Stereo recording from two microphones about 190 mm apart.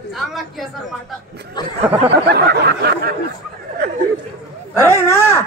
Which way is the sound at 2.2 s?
60° right (ahead or behind).